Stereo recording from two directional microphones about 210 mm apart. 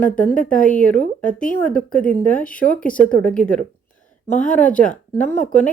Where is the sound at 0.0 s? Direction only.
5° left (ahead or behind).